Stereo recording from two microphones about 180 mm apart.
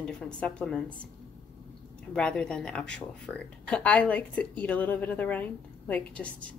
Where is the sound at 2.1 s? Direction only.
5° left (ahead or behind).